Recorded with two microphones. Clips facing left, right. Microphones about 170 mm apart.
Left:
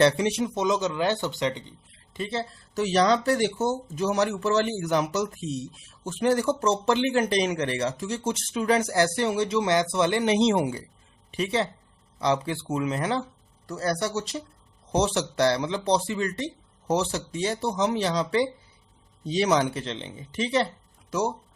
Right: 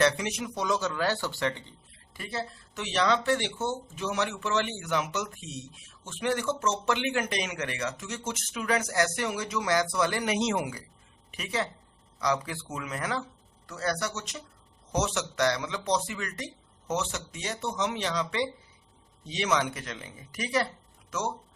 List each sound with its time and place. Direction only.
0.0 s speech: 30° left (ahead or behind)
2.8 s speech: 40° left (ahead or behind)